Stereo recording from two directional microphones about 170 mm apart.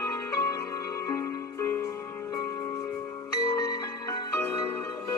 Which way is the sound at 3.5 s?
20° left (ahead or behind).